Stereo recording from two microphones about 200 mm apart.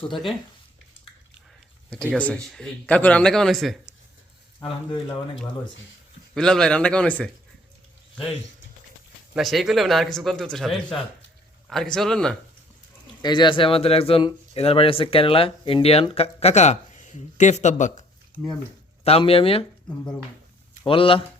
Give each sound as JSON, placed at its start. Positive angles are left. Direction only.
{"t": 2.1, "sound": "speech", "side_deg": 5}
{"t": 4.6, "sound": "speech", "side_deg": 20}
{"t": 6.3, "sound": "speech", "side_deg": 5}
{"t": 9.3, "sound": "speech", "side_deg": 0}
{"t": 13.2, "sound": "speech", "side_deg": 20}
{"t": 18.3, "sound": "speech", "side_deg": -45}
{"t": 19.0, "sound": "speech", "side_deg": 30}
{"t": 20.8, "sound": "speech", "side_deg": 25}